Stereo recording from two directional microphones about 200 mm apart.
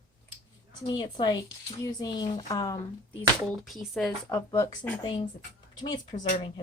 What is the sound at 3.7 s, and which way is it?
Speech, centre (ahead or behind).